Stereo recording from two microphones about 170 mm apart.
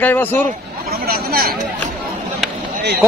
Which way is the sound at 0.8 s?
65° right (ahead or behind).